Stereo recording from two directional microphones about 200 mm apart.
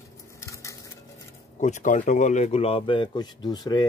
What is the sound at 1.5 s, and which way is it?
Speech, 35° left (ahead or behind).